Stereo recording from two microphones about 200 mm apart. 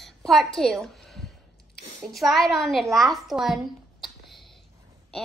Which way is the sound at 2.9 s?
Centre (ahead or behind).